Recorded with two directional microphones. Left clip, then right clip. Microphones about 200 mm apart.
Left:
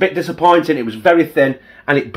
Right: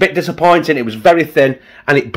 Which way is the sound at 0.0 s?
60° right (ahead or behind).